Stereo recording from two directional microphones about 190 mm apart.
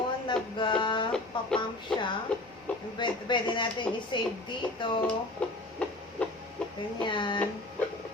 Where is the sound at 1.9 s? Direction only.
5° left (ahead or behind).